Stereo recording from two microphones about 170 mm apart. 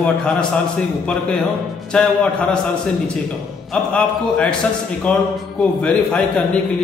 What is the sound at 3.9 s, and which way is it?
Speech, 5° left (ahead or behind).